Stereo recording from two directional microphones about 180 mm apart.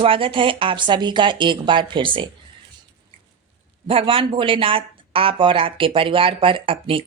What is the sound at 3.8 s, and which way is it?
Speech, 30° right (ahead or behind).